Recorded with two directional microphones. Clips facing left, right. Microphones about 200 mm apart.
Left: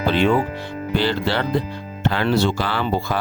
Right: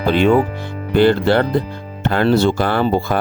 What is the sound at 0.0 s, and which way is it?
Speech, 50° right (ahead or behind).